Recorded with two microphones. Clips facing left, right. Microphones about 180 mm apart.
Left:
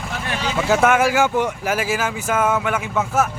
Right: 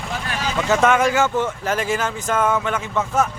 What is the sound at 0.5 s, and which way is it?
Speech, 10° left (ahead or behind).